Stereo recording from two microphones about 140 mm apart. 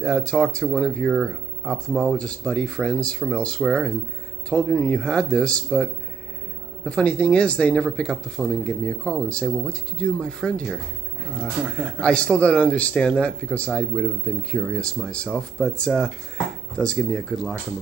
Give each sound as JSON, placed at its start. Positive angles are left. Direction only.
{"t": 0.0, "sound": "speech", "side_deg": 5}
{"t": 11.3, "sound": "speech", "side_deg": -5}
{"t": 12.0, "sound": "speech", "side_deg": 5}